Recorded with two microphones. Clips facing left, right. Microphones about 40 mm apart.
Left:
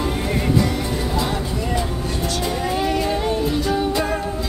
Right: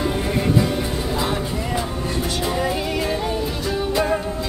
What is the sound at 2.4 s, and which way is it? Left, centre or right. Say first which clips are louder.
Music: left 1 dB; centre.